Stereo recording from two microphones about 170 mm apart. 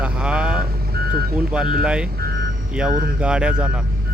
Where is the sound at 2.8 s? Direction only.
5° right (ahead or behind).